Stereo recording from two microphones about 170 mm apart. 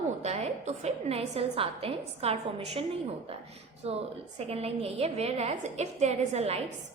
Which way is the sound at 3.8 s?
40° right (ahead or behind).